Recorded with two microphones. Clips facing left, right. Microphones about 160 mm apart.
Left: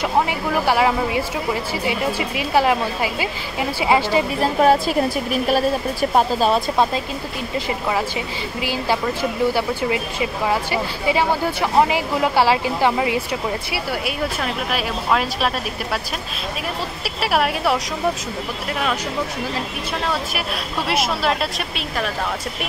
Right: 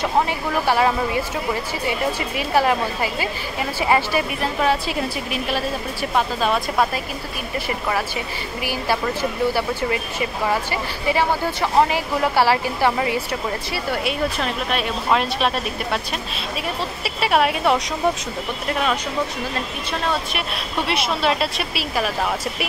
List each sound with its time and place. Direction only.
0.0 s speech: 15° left (ahead or behind)
4.4 s a woman's voice: 40° left (ahead or behind)
7.5 s speech: 20° left (ahead or behind); by 16.0 s centre (ahead or behind)
17.0 s a woman's voice: centre (ahead or behind)
20.3 s a woman's voice: centre (ahead or behind)